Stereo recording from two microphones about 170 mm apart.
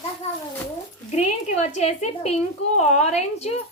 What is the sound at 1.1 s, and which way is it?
A woman's voice, 40° left (ahead or behind).